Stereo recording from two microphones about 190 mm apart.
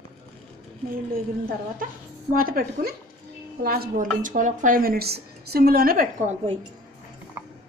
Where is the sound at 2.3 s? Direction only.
50° right (ahead or behind).